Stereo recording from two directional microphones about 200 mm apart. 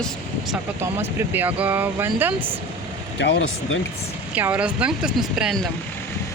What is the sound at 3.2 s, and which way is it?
Speech, 70° left (ahead or behind).